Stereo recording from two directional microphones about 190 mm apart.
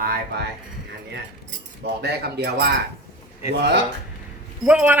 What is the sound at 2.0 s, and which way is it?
Speech, 60° right (ahead or behind).